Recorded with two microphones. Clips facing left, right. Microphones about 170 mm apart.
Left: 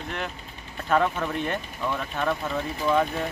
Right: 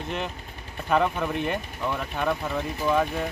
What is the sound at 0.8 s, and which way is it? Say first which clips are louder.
Speech: even; 10° right (ahead or behind).